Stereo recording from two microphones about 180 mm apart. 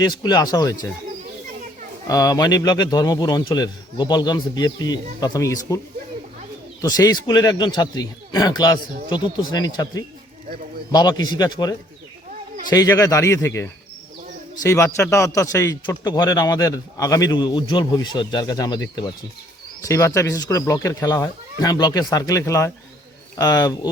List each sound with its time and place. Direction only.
0.0 s a man's voice: 20° left (ahead or behind)
2.0 s a man's voice: 20° left (ahead or behind)
6.8 s a man's voice: 20° left (ahead or behind)